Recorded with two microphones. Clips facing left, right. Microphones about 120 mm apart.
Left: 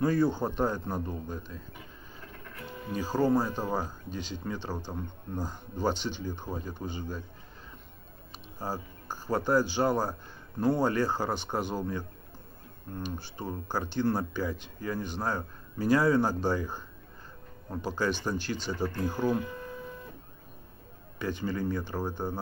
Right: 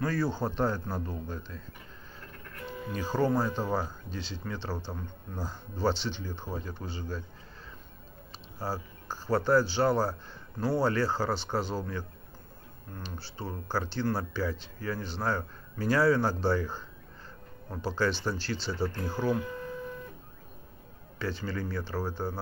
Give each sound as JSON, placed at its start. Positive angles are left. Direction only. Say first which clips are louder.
{"t": 0.0, "sound": "speech", "louder": "left 4 dB", "side_deg": 15}
{"t": 2.9, "sound": "speech", "louder": "left 2 dB", "side_deg": 10}
{"t": 8.5, "sound": "a man's voice", "louder": "even", "side_deg": 15}
{"t": 13.0, "sound": "speech", "louder": "left 3 dB", "side_deg": 15}
{"t": 21.2, "sound": "speech", "louder": "left 2 dB", "side_deg": 15}